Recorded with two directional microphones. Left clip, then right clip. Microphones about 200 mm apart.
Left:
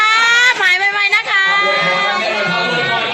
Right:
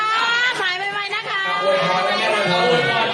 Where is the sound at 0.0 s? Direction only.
30° left (ahead or behind).